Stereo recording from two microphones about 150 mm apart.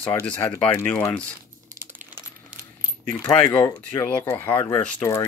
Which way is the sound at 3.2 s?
25° left (ahead or behind).